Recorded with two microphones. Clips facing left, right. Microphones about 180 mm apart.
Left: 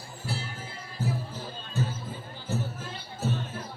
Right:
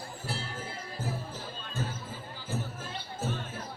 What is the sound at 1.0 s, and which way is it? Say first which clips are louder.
Music: left 5 dB; 50° right (ahead or behind).